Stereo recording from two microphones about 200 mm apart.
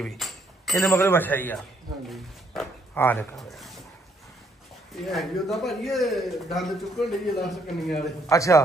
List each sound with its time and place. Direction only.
0.0 s a sound: centre (ahead or behind)
0.7 s a man's voice: 15° left (ahead or behind)
2.0 s a sound: centre (ahead or behind)
3.0 s a man's voice: 10° left (ahead or behind)
5.0 s a man's voice: centre (ahead or behind)
8.3 s a man's voice: 15° left (ahead or behind)